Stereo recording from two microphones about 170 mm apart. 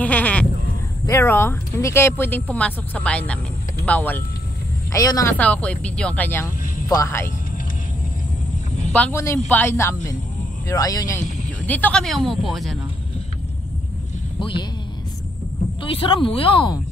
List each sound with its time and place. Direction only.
0.0 s sheep: 10° left (ahead or behind)
1.0 s speech: 15° left (ahead or behind)
5.4 s speech: 10° left (ahead or behind)
8.9 s speech: 10° left (ahead or behind)
14.4 s speech: 25° left (ahead or behind)
15.8 s speech: 30° left (ahead or behind)